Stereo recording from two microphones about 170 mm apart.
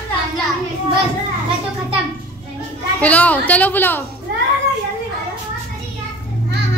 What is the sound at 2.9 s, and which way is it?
A woman's voice, 10° left (ahead or behind).